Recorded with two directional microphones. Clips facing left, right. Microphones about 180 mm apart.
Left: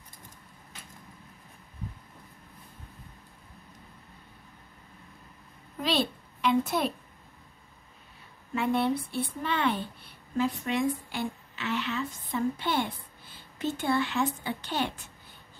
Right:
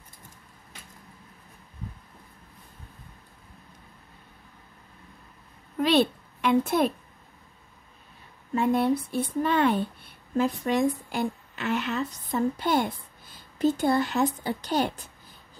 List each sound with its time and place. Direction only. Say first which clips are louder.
5.8 s a woman's voice: right 7 dB; 55° right (ahead or behind)
8.5 s a woman's voice: right 4 dB; 45° right (ahead or behind)